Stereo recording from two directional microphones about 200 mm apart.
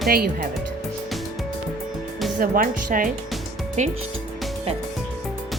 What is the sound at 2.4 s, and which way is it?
Speech, 45° right (ahead or behind).